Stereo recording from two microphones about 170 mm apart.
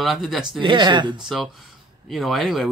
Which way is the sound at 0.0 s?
Centre (ahead or behind).